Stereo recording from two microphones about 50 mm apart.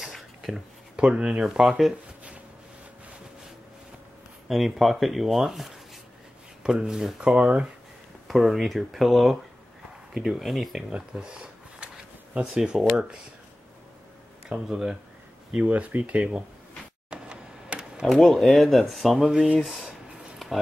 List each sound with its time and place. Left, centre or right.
0.0 s a sound: centre
0.9 s speech: centre
1.4 s speech: centre
4.5 s speech: centre
10.9 s speech: centre
14.7 s speech: centre
15.5 s speech: right
17.1 s a sound: centre
18.0 s speech: centre
20.4 s a sound: centre